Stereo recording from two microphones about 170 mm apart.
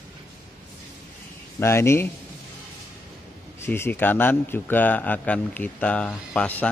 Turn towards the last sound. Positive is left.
turn(degrees=10)  # may be behind; listen again after turning